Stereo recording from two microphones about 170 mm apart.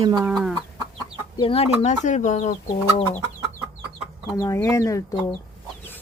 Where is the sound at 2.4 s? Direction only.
25° left (ahead or behind).